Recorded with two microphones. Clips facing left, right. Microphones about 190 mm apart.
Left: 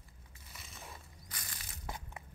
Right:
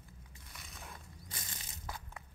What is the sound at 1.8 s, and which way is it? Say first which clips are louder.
Crushing: left 2 dB; 20° left (ahead or behind).